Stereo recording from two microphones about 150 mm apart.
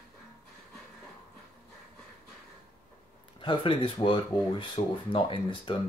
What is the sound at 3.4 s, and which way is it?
Speech, 35° left (ahead or behind).